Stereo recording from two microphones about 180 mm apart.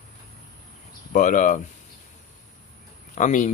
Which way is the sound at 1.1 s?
45° left (ahead or behind).